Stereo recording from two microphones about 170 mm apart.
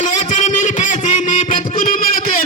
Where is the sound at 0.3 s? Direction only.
45° left (ahead or behind).